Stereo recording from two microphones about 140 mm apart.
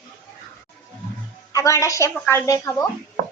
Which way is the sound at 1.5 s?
25° left (ahead or behind).